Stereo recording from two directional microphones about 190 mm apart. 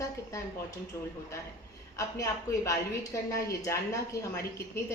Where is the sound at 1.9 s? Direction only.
15° left (ahead or behind).